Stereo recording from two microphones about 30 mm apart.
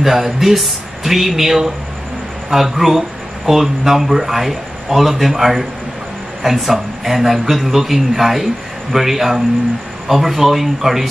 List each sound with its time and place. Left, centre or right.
0.0 s a man's voice: centre